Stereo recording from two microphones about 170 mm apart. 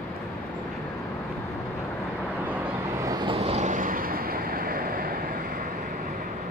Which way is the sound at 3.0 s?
25° right (ahead or behind).